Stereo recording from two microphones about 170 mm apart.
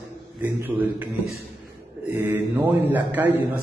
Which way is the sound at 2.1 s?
10° right (ahead or behind).